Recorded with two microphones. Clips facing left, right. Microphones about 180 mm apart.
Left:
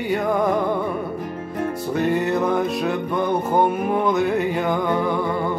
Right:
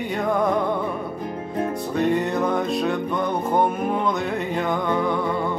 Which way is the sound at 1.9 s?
5° left (ahead or behind).